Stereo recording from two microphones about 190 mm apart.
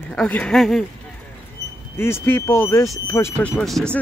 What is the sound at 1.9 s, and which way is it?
Speech, 10° left (ahead or behind).